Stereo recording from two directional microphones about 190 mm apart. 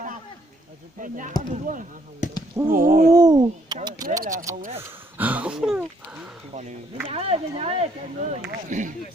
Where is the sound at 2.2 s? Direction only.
40° left (ahead or behind).